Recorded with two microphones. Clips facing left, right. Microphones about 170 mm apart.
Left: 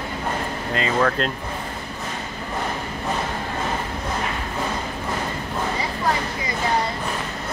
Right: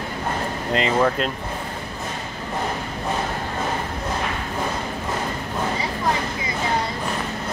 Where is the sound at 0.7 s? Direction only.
20° right (ahead or behind).